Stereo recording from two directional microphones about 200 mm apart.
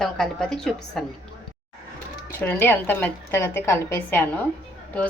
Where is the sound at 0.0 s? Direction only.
5° left (ahead or behind).